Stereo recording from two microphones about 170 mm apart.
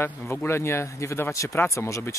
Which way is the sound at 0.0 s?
15° left (ahead or behind).